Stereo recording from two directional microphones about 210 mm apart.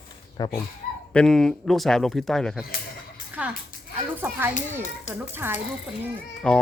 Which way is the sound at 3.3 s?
10° right (ahead or behind).